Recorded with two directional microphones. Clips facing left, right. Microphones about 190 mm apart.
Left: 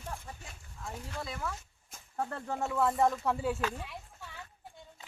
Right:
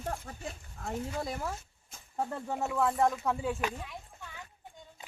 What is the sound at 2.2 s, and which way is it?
Speech, 10° right (ahead or behind).